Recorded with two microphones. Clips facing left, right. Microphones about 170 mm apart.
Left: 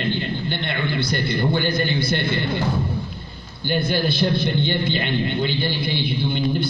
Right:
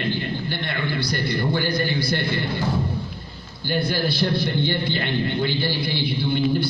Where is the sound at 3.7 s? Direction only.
20° left (ahead or behind).